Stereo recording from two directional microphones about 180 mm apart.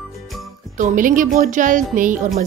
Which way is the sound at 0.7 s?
45° right (ahead or behind).